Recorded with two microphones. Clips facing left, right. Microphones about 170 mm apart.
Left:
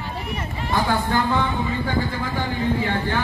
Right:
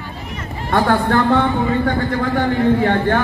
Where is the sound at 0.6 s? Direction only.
65° right (ahead or behind).